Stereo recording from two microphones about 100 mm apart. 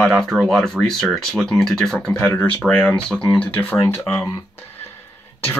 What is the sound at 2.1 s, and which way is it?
Speech, 15° left (ahead or behind).